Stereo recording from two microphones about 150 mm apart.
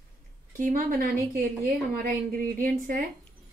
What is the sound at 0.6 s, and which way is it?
A woman's voice, 65° right (ahead or behind).